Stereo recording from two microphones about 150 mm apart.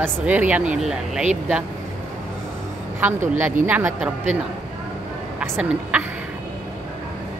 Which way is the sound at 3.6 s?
10° right (ahead or behind).